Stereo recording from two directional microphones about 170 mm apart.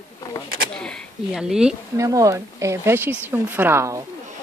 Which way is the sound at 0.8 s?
5° left (ahead or behind).